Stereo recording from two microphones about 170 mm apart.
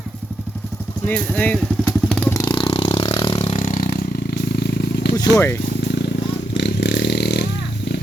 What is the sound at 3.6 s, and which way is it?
Vehicle, 50° left (ahead or behind).